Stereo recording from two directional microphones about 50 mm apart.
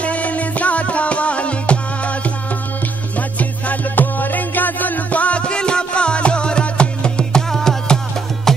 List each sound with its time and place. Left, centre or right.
0.0 s music: left; by 8.6 s centre